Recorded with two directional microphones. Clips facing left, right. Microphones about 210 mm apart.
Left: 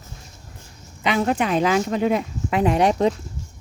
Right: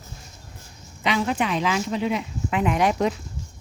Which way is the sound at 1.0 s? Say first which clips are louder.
Left 3 dB; 50° left (ahead or behind).